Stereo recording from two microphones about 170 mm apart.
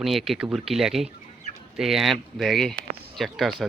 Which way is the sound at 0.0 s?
Centre (ahead or behind).